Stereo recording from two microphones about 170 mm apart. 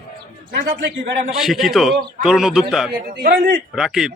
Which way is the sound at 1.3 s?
Centre (ahead or behind).